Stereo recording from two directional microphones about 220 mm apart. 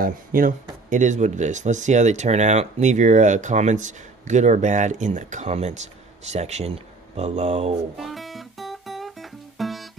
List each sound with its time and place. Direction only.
0.0 s speech: 40° right (ahead or behind)
8.0 s music: centre (ahead or behind)